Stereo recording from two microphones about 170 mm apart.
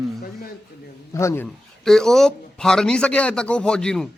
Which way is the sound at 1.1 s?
15° left (ahead or behind).